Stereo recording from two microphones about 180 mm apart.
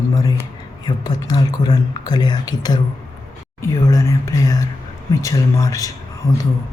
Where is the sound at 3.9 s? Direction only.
15° left (ahead or behind).